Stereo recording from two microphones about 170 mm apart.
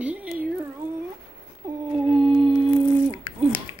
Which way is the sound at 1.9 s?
35° right (ahead or behind).